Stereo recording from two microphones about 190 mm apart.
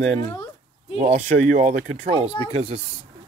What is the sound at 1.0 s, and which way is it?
Speech, 40° right (ahead or behind).